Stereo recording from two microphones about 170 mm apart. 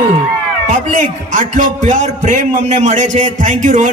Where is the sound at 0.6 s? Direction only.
45° right (ahead or behind).